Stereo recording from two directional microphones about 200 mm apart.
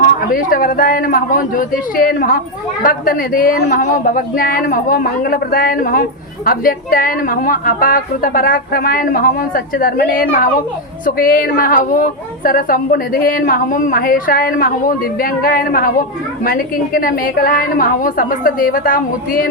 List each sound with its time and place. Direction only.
0.0 s speech: 45° left (ahead or behind)